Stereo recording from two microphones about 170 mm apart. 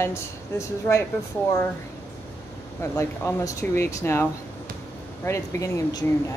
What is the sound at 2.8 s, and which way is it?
Speech, 15° left (ahead or behind).